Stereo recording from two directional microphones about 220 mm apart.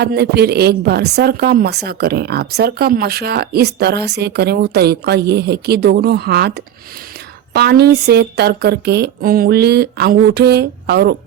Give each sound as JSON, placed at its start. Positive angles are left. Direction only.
{"t": 0.0, "sound": "a woman's voice", "side_deg": -45}